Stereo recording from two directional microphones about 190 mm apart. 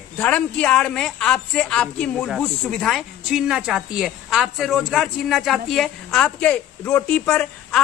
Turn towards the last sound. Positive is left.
turn(degrees=5)  # may be behind; listen again after turning